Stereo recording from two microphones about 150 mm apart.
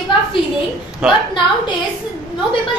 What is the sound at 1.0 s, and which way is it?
Speech, 5° right (ahead or behind).